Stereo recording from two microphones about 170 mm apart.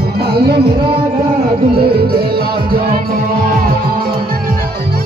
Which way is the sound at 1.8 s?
65° right (ahead or behind).